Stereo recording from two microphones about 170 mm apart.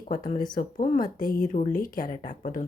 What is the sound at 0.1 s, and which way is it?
Speech, 50° left (ahead or behind).